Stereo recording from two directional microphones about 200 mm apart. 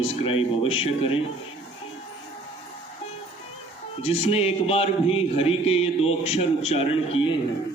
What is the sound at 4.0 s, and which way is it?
Speech, 30° left (ahead or behind).